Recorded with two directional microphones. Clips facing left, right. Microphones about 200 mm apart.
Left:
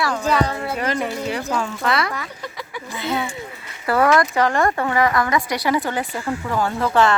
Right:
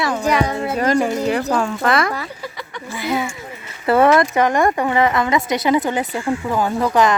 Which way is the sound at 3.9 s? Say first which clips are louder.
Right 4 dB; 25° right (ahead or behind).